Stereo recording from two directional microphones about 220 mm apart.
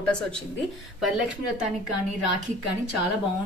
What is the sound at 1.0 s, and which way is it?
Speech, centre (ahead or behind).